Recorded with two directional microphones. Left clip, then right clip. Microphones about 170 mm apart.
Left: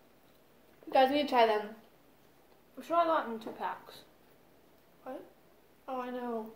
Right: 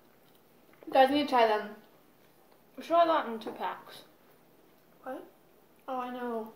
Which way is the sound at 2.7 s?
15° right (ahead or behind).